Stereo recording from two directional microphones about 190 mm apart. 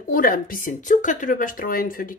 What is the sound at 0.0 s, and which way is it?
A woman's voice, 45° left (ahead or behind).